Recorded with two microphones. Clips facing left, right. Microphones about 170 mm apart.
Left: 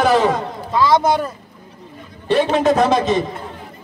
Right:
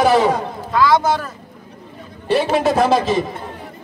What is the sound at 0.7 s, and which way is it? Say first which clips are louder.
Speech: even; 20° left (ahead or behind).